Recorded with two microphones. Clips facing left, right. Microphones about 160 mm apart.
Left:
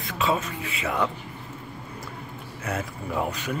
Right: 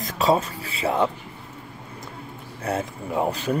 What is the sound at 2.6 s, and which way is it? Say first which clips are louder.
Speech: right 4 dB; 30° right (ahead or behind).